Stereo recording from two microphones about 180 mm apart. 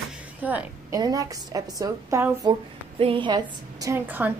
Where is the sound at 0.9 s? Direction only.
20° right (ahead or behind).